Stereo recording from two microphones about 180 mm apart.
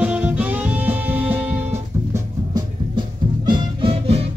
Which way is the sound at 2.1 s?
25° right (ahead or behind).